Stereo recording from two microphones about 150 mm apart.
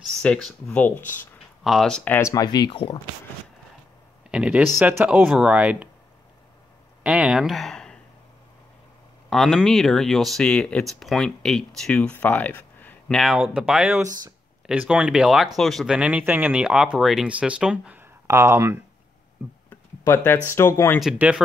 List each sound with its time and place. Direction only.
0.0 s speech: 5° left (ahead or behind)
1.6 s speech: centre (ahead or behind); by 3.0 s 30° left (ahead or behind)
4.3 s speech: 10° right (ahead or behind)
7.0 s speech: 5° right (ahead or behind)
9.3 s speech: centre (ahead or behind)
13.2 s speech: 5° right (ahead or behind)
18.2 s speech: 20° right (ahead or behind)
19.7 s guitar: 15° left (ahead or behind)
20.4 s speech: 20° left (ahead or behind)
21.0 s speech: 5° right (ahead or behind)